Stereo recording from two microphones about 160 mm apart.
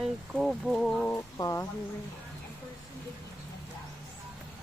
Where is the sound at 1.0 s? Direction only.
20° left (ahead or behind).